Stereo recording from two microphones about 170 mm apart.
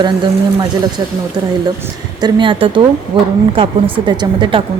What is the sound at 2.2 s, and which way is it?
Speech, 25° right (ahead or behind).